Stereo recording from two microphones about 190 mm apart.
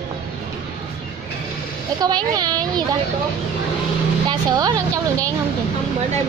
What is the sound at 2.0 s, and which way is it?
Speech, 20° right (ahead or behind).